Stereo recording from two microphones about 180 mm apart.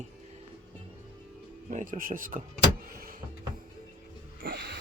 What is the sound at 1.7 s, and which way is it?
Speech, 45° right (ahead or behind).